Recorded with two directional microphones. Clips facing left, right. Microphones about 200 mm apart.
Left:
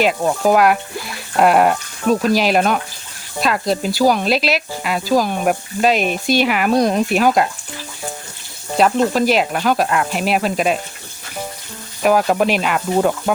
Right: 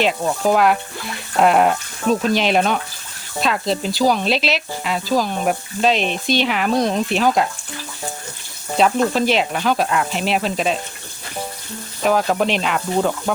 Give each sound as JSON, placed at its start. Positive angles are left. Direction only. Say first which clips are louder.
{"t": 0.0, "sound": "sizzle", "louder": "left 2 dB", "side_deg": 5}
{"t": 4.4, "sound": "snake", "louder": "left 2 dB", "side_deg": 5}
{"t": 9.1, "sound": "sizzle", "louder": "left 2 dB", "side_deg": 5}
{"t": 12.0, "sound": "snake", "louder": "left 3 dB", "side_deg": 10}